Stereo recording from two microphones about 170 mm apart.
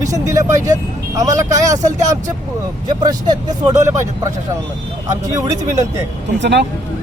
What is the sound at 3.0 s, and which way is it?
Speech, 25° right (ahead or behind).